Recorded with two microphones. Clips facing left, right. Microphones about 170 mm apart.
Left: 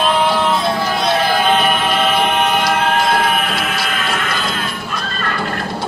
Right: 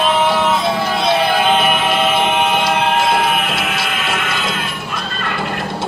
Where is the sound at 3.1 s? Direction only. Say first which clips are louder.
Even; centre (ahead or behind).